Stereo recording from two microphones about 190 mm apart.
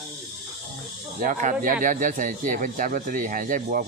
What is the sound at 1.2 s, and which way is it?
Speech, 45° right (ahead or behind).